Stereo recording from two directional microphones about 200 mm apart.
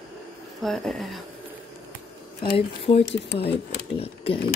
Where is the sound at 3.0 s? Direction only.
60° left (ahead or behind).